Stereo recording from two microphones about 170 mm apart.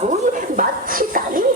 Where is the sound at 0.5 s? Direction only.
55° right (ahead or behind).